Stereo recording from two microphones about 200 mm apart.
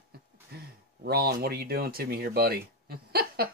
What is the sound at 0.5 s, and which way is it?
Speech, 50° right (ahead or behind).